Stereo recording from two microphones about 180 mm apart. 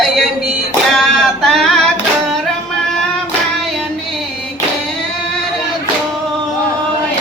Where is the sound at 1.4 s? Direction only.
Centre (ahead or behind).